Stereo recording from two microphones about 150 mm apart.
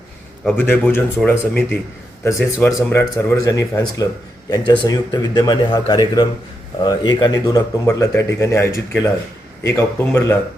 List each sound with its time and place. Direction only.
0.5 s a man's voice: 15° left (ahead or behind)